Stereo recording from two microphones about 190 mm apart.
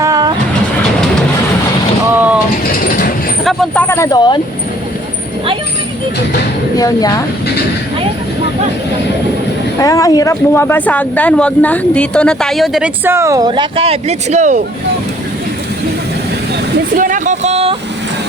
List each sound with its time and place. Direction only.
0.0 s train: 20° right (ahead or behind)
2.1 s mechanisms: 5° right (ahead or behind)
2.8 s vehicle: 50° left (ahead or behind)
3.4 s vehicle: centre (ahead or behind)
3.8 s speech: 15° left (ahead or behind)
6.7 s speech: 20° left (ahead or behind)
9.8 s speech: 20° left (ahead or behind); by 12.9 s centre (ahead or behind)
13.1 s speech: 15° right (ahead or behind); by 14.6 s 40° right (ahead or behind)
17.0 s speech: 40° right (ahead or behind)